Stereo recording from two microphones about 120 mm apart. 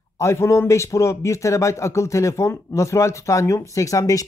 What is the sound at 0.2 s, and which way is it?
Speech, 25° left (ahead or behind).